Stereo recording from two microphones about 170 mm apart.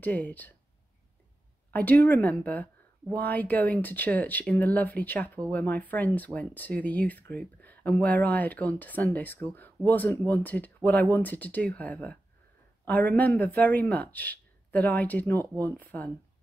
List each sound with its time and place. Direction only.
0.0 s speech: 10° left (ahead or behind)
1.7 s speech: 10° left (ahead or behind)